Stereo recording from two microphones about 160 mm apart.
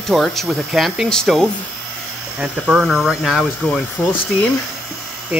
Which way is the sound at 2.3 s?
10° right (ahead or behind).